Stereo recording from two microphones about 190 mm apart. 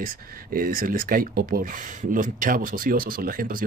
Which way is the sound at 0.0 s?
50° right (ahead or behind).